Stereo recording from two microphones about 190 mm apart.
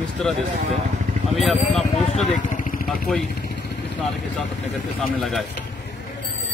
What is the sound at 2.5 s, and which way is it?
Vehicle, 45° left (ahead or behind).